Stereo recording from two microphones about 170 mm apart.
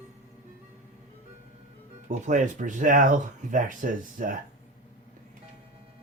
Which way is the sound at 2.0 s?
45° right (ahead or behind).